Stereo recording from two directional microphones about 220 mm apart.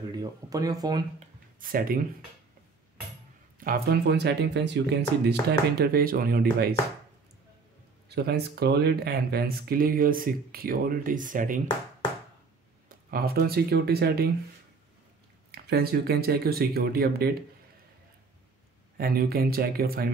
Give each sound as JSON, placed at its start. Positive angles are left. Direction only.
{"t": 0.1, "sound": "speech", "side_deg": -15}
{"t": 1.6, "sound": "speech", "side_deg": -40}
{"t": 3.5, "sound": "speech", "side_deg": -40}
{"t": 8.1, "sound": "speech", "side_deg": -45}
{"t": 12.8, "sound": "speech", "side_deg": -40}
{"t": 15.5, "sound": "speech", "side_deg": -45}
{"t": 18.9, "sound": "speech", "side_deg": -45}